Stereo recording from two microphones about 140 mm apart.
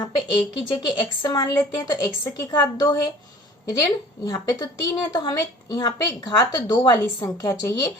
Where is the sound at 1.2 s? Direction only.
25° left (ahead or behind).